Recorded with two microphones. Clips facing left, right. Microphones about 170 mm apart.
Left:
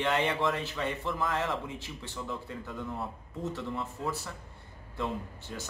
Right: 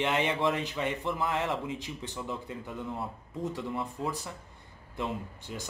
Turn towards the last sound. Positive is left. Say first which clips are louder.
# right 1 dB
turn(degrees=-15)  # may be behind; listen again after turning